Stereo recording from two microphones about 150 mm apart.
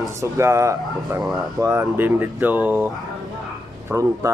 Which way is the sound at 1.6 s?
20° right (ahead or behind).